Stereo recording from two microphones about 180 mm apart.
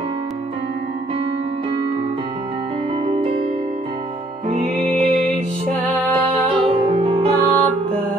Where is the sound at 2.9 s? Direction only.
30° right (ahead or behind).